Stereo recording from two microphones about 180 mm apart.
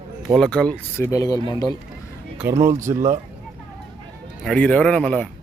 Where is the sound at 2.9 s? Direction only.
40° right (ahead or behind).